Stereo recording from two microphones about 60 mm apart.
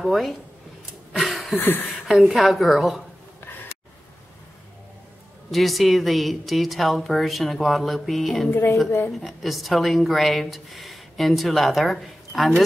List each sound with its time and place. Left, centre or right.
0.0 s speech: centre
1.1 s a sound: centre
1.6 s speech: left
2.0 s speech: centre
5.5 s speech: centre
8.5 s a woman's voice: left
9.2 s speech: centre